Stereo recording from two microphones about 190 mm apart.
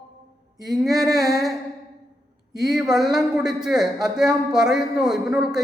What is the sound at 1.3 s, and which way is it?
Speech, centre (ahead or behind).